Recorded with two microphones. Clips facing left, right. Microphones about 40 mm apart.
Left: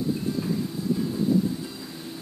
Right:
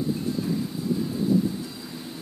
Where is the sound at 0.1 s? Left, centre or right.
Centre.